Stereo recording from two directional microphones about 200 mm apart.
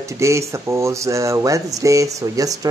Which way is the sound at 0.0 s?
15° right (ahead or behind).